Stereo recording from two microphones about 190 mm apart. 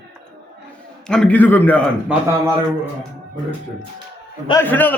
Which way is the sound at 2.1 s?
5° right (ahead or behind).